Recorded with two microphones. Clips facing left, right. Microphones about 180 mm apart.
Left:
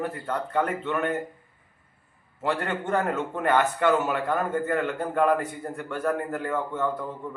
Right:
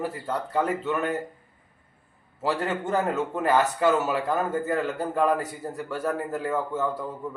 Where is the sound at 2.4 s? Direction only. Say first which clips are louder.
Right 1 dB; 5° right (ahead or behind).